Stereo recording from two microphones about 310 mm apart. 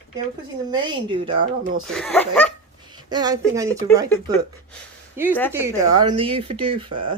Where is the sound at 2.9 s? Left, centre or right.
Centre.